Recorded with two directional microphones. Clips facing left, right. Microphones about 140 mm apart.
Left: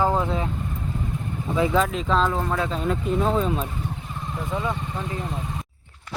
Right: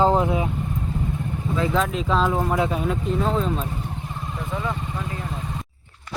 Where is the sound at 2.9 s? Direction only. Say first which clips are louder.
Left 1 dB; 5° left (ahead or behind).